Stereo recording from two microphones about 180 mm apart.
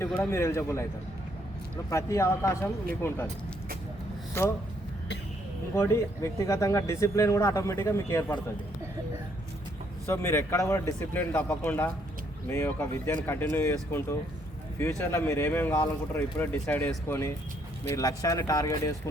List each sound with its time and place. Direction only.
0.2 s speech: 15° left (ahead or behind)
4.4 s speech: 15° left (ahead or behind)
5.7 s speech: 15° left (ahead or behind)
10.1 s speech: 15° left (ahead or behind)
14.8 s speech: 15° left (ahead or behind)